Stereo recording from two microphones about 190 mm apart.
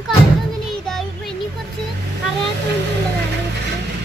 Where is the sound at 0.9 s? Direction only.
Centre (ahead or behind).